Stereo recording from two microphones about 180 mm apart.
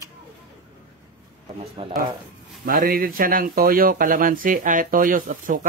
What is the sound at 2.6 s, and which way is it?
Speech, 55° right (ahead or behind).